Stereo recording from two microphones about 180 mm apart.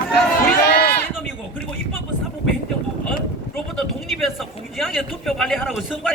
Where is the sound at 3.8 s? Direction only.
Centre (ahead or behind).